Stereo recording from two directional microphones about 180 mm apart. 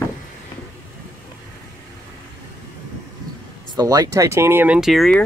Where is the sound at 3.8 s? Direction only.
20° right (ahead or behind); by 5.2 s 5° left (ahead or behind).